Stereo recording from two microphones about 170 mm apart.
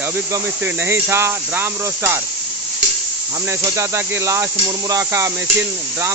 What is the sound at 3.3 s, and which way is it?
Speech, 15° right (ahead or behind).